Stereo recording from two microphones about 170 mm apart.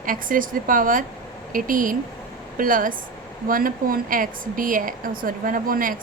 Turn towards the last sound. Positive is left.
turn(degrees=-55)  # may be behind; listen again after turning